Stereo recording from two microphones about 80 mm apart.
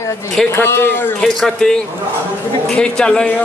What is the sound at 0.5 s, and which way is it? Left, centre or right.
Speech, left.